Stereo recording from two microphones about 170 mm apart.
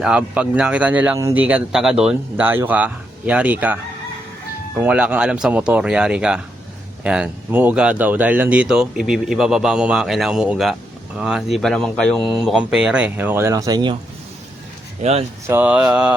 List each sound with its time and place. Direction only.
0.0 s speech: 5° right (ahead or behind)
4.8 s speech: 10° right (ahead or behind); by 13.9 s 25° right (ahead or behind)
15.0 s speech: 40° right (ahead or behind)
15.4 s speech: 10° right (ahead or behind)